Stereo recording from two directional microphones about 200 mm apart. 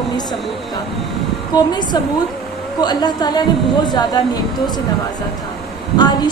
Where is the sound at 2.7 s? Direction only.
20° left (ahead or behind).